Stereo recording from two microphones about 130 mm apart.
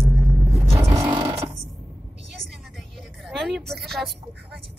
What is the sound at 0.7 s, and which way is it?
Vehicle, 20° right (ahead or behind).